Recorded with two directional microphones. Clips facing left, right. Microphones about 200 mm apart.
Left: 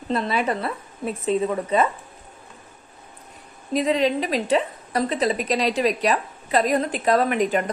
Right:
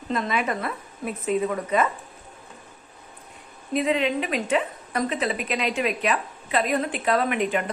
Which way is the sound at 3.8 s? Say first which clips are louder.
Left 2 dB; 35° left (ahead or behind).